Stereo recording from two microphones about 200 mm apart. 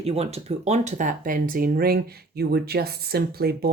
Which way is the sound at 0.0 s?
30° right (ahead or behind).